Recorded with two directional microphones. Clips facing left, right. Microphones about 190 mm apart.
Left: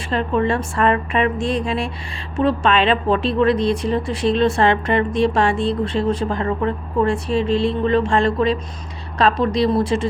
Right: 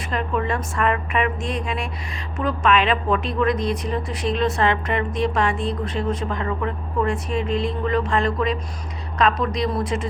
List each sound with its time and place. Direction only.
0.1 s a woman's voice: 30° left (ahead or behind)